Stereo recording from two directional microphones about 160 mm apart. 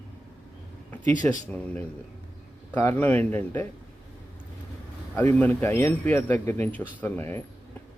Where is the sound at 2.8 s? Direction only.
10° left (ahead or behind).